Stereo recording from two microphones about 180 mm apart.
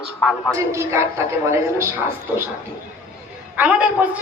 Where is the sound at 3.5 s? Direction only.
10° right (ahead or behind).